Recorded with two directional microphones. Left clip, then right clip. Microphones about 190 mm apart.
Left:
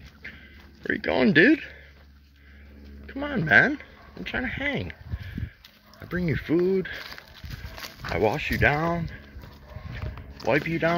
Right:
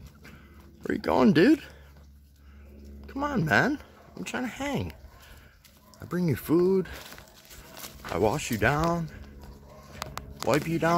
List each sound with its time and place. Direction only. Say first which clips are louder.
0.8 s speech: even; 20° right (ahead or behind)
3.1 s speech: left 4 dB; 10° right (ahead or behind)
5.9 s a sound: left 2 dB; centre (ahead or behind)
6.2 s speech: even; 15° right (ahead or behind)
8.1 s speech: left 2 dB; 10° right (ahead or behind)
10.4 s speech: left 2 dB; 10° right (ahead or behind)